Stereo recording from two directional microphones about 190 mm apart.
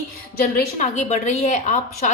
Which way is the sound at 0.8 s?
35° left (ahead or behind).